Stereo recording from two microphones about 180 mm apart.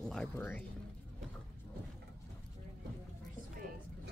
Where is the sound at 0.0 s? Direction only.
5° left (ahead or behind).